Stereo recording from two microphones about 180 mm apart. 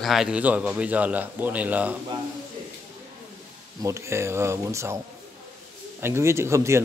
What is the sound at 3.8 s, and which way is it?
A man's voice, 15° right (ahead or behind).